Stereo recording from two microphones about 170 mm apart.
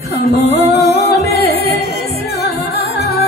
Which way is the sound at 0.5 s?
70° left (ahead or behind).